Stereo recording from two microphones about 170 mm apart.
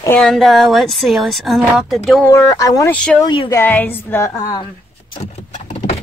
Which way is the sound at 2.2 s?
15° left (ahead or behind).